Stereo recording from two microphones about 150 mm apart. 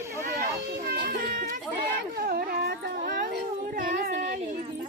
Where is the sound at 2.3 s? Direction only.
85° right.